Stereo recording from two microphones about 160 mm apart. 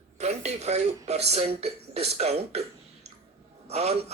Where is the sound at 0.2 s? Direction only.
45° right (ahead or behind).